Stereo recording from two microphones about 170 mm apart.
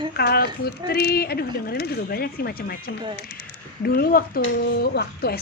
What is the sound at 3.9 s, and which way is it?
Speech, 65° left (ahead or behind).